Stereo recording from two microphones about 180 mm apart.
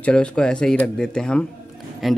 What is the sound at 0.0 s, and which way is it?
Speech, 5° left (ahead or behind).